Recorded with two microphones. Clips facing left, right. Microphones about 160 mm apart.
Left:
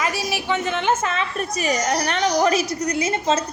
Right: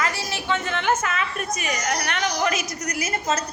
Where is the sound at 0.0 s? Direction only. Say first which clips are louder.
Left 3 dB; 15° left (ahead or behind).